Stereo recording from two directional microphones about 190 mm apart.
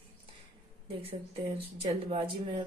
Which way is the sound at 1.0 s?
30° right (ahead or behind).